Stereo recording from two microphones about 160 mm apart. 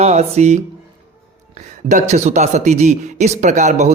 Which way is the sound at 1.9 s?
50° right (ahead or behind).